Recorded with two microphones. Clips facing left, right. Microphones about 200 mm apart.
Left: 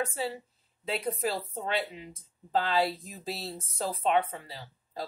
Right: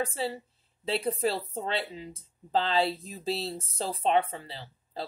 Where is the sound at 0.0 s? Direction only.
30° right (ahead or behind).